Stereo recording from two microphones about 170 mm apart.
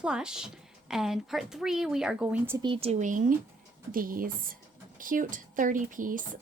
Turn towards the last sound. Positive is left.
turn(degrees=-50)  # may be behind; listen again after turning